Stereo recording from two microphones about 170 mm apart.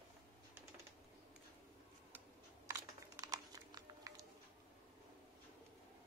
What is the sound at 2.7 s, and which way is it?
Crumpling, 20° right (ahead or behind).